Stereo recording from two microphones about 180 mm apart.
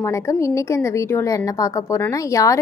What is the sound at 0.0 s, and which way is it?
A woman's voice, 15° left (ahead or behind).